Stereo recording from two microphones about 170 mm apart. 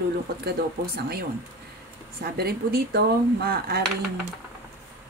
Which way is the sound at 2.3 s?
65° right (ahead or behind).